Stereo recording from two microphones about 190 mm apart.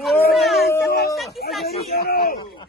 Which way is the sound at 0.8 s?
55° left (ahead or behind).